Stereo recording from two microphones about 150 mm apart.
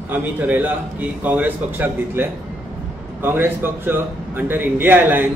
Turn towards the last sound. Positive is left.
turn(degrees=-15)  # may be behind; listen again after turning